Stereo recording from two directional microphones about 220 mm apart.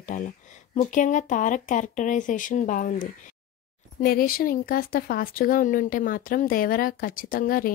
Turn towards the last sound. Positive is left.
turn(degrees=40)  # may be behind; listen again after turning